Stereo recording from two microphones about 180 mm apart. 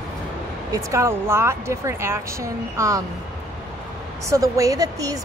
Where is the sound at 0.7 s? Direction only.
15° right (ahead or behind).